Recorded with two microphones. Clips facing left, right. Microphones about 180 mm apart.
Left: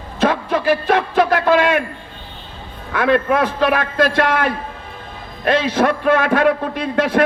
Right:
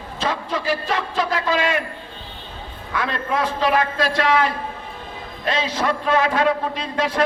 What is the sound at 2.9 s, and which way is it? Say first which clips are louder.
A man's voice: left 8 dB; 55° left (ahead or behind).